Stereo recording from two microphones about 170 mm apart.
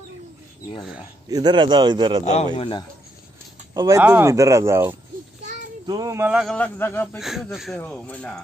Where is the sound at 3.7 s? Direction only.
20° right (ahead or behind).